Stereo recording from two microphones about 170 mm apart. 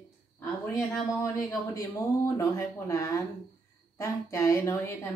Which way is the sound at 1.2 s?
20° left (ahead or behind).